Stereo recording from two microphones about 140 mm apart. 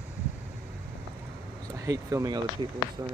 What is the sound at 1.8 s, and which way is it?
Speech, 25° right (ahead or behind).